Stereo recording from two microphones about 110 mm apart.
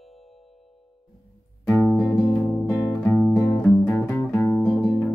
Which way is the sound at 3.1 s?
5° right (ahead or behind).